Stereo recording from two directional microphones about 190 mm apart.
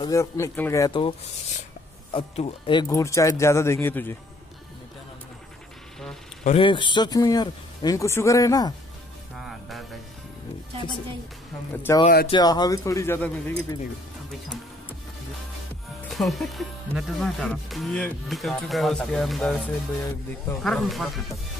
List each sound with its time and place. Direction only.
0.0 s speech: 15° left (ahead or behind)
2.1 s speech: 30° left (ahead or behind); by 4.2 s 10° left (ahead or behind)
6.4 s speech: 30° left (ahead or behind)
9.4 s music: centre (ahead or behind)
11.7 s speech: 10° left (ahead or behind)
12.3 s speech: 20° left (ahead or behind)
16.1 s speech: centre (ahead or behind)
20.6 s speech: centre (ahead or behind)